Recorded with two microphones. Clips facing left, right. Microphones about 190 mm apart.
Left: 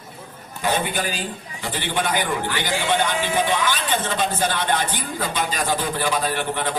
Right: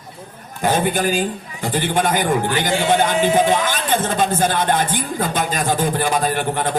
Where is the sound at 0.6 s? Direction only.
50° right (ahead or behind).